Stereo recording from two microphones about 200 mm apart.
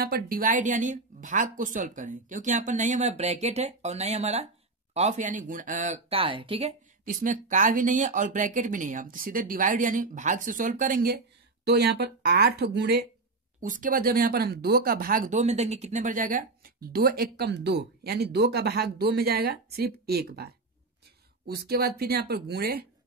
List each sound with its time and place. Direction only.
0.0 s speech: 50° right (ahead or behind); by 6.7 s 25° right (ahead or behind)
7.1 s speech: 40° right (ahead or behind)
11.6 s speech: 55° right (ahead or behind)
13.6 s speech: 40° right (ahead or behind)